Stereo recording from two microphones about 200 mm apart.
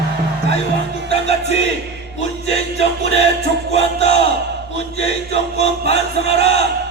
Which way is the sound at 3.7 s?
30° left (ahead or behind).